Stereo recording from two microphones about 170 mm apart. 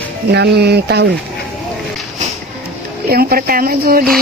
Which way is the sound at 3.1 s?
65° right (ahead or behind).